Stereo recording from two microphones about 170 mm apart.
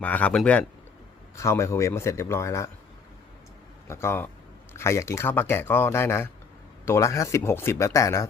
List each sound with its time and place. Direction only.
0.0 s speech: 10° left (ahead or behind)
3.8 s speech: 15° left (ahead or behind)